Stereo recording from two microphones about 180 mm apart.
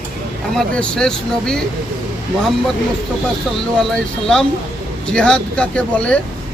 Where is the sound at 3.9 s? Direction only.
5° left (ahead or behind).